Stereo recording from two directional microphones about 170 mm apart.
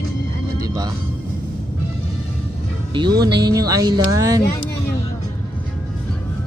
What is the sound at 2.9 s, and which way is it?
Speech, 25° right (ahead or behind).